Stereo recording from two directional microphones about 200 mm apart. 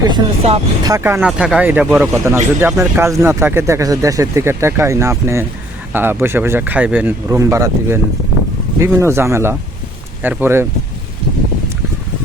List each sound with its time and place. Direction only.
0.0 s speech: 25° right (ahead or behind)
0.9 s speech: 15° right (ahead or behind)
1.3 s speech: centre (ahead or behind)